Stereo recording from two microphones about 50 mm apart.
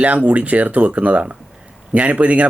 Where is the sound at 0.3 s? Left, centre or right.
Right.